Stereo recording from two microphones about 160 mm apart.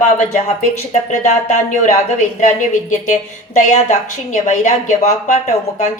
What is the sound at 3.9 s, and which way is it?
Speech, 50° left (ahead or behind).